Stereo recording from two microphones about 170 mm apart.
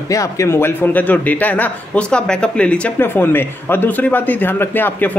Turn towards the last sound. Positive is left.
turn(degrees=10)  # may be behind; listen again after turning